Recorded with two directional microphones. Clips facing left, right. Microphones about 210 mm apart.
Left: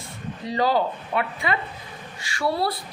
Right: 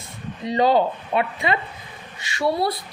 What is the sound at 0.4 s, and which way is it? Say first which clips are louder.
Speech: right 4 dB; 20° right (ahead or behind).